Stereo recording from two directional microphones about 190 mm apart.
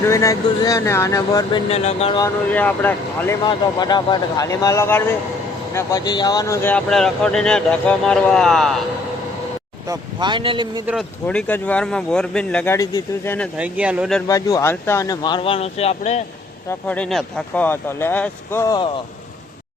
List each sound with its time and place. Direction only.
0.0 s speech: 15° left (ahead or behind)
1.7 s speech: 35° left (ahead or behind)
2.5 s speech: 10° left (ahead or behind)
3.4 s speech: 20° left (ahead or behind); by 8.8 s centre (ahead or behind)
9.8 s speech: 20° right (ahead or behind)
11.3 s speech: 10° left (ahead or behind)
13.6 s speech: 5° right (ahead or behind)
14.3 s speech: 20° left (ahead or behind); by 16.2 s 35° left (ahead or behind)
16.6 s speech: 10° left (ahead or behind)